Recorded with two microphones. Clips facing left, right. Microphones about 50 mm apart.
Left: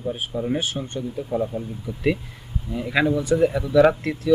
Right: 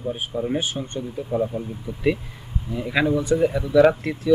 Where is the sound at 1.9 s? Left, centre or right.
Right.